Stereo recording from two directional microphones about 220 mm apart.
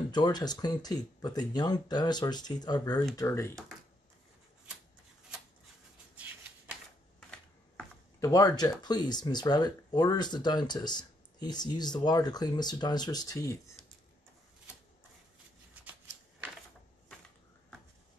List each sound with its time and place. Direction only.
0.1 s speech: 20° left (ahead or behind)
7.2 s speech: 5° left (ahead or behind)
15.7 s shuffling cards: 5° right (ahead or behind)